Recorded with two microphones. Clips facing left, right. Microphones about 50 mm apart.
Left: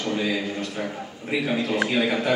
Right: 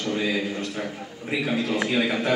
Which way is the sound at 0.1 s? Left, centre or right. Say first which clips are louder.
Right 1 dB; centre.